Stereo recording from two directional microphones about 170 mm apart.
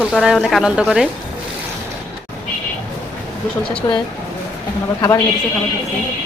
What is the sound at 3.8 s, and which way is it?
Speech, 20° left (ahead or behind).